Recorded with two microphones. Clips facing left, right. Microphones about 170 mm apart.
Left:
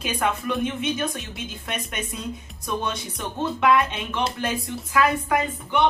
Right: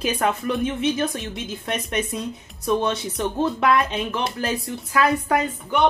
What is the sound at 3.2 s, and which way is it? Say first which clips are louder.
A woman's voice: right 3 dB; 35° right (ahead or behind).